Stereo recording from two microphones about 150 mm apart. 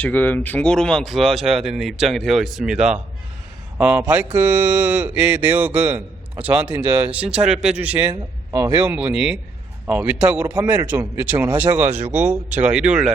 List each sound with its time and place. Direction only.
0.0 s speech: 10° left (ahead or behind); by 8.0 s 10° right (ahead or behind)
8.5 s speech: 20° right (ahead or behind)
9.0 s speech: 5° right (ahead or behind)